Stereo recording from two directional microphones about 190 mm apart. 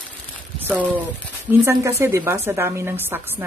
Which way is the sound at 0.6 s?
10° right (ahead or behind).